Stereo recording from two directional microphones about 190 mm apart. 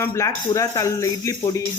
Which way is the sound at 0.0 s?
15° left (ahead or behind).